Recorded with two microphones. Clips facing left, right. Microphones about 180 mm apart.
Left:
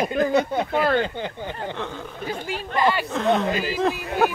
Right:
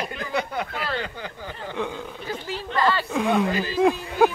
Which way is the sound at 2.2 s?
50° left (ahead or behind).